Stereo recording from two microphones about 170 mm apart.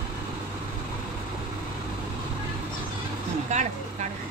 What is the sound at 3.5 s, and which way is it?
Speech, 45° right (ahead or behind).